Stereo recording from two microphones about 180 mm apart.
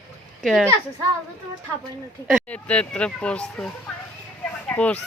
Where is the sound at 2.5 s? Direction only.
5° left (ahead or behind).